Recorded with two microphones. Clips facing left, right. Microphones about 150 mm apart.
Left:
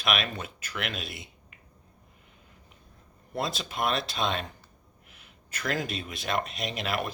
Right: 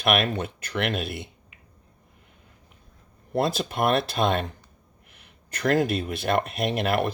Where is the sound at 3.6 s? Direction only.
55° right (ahead or behind).